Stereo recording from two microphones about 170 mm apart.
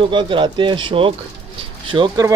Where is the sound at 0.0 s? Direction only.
30° right (ahead or behind).